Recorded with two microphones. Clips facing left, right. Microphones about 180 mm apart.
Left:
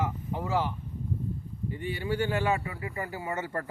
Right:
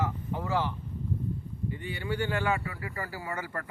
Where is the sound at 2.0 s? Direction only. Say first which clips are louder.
Left 2 dB; 25° left (ahead or behind).